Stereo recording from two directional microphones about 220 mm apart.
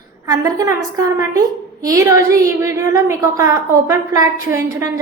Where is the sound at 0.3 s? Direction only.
15° right (ahead or behind).